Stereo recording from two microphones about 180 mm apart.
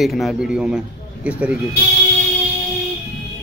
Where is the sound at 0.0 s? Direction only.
Centre (ahead or behind).